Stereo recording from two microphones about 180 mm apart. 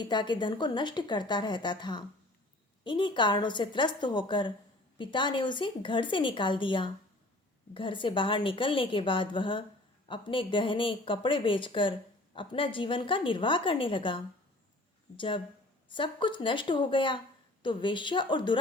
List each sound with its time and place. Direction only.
0.0 s speech: 25° left (ahead or behind)